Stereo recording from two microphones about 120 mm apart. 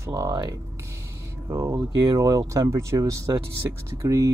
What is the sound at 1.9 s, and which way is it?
Speech, 40° right (ahead or behind).